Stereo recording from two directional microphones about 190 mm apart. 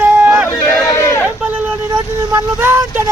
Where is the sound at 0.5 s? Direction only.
20° left (ahead or behind).